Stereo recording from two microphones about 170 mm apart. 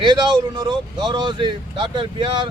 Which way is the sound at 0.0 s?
25° right (ahead or behind).